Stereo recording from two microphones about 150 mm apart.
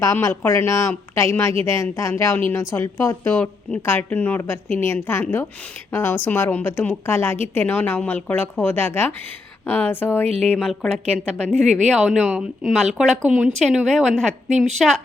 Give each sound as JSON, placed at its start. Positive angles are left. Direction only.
{"t": 0.0, "sound": "a woman's voice", "side_deg": 20}
{"t": 10.2, "sound": "speech", "side_deg": -40}
{"t": 10.5, "sound": "speech", "side_deg": 5}
{"t": 11.5, "sound": "speech", "side_deg": -50}
{"t": 11.9, "sound": "speech", "side_deg": 0}